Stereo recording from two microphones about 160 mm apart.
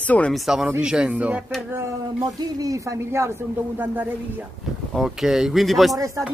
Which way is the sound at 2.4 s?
25° right (ahead or behind).